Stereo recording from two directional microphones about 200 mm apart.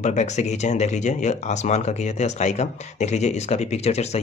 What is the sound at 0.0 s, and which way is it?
Speech, 35° left (ahead or behind).